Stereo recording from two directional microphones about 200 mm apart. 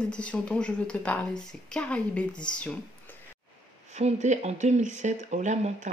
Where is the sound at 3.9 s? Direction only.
35° right (ahead or behind).